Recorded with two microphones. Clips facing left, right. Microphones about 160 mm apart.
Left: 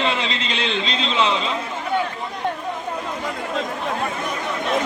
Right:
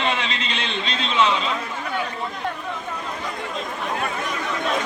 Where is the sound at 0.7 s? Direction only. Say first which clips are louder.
Left 3 dB; 90° left.